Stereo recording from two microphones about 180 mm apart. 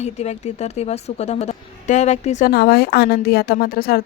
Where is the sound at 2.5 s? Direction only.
65° left (ahead or behind).